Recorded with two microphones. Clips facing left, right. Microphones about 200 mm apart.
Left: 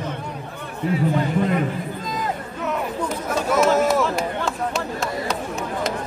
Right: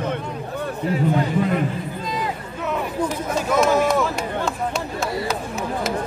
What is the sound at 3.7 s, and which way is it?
Run, 5° left (ahead or behind).